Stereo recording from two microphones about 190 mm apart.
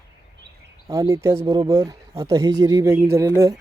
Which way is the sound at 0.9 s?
15° right (ahead or behind).